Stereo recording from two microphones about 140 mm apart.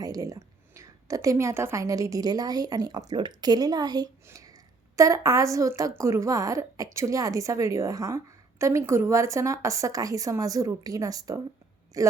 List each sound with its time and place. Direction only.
0.0 s a woman's voice: 25° right (ahead or behind)